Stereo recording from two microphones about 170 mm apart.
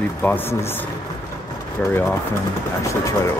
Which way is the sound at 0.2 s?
10° left (ahead or behind).